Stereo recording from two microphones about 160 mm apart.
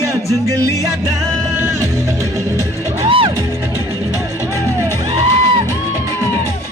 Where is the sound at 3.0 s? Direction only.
35° right (ahead or behind).